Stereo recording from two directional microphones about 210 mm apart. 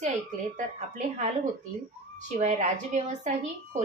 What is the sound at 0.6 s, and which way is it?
Speech, 35° right (ahead or behind).